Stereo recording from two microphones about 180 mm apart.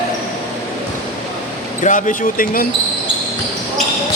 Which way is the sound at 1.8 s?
45° left (ahead or behind).